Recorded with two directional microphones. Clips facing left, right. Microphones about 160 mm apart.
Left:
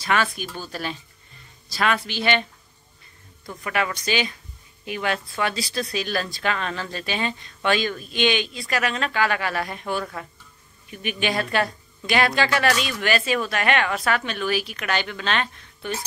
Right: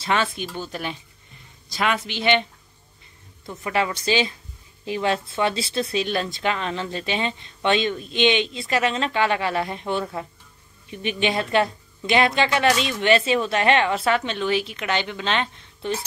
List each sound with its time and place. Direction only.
0.0 s speech: 25° right (ahead or behind)
3.4 s speech: 25° right (ahead or behind)